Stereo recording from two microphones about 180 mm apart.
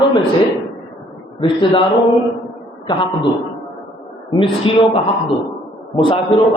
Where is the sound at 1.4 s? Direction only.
30° left (ahead or behind).